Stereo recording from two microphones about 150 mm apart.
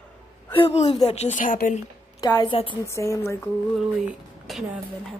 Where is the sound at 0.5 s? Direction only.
40° left (ahead or behind); by 1.8 s 65° left (ahead or behind).